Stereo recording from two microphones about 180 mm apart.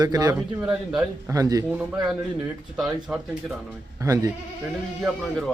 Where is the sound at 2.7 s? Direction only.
5° right (ahead or behind).